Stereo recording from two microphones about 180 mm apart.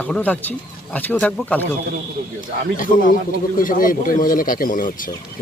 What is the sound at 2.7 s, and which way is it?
Speech, 50° left (ahead or behind).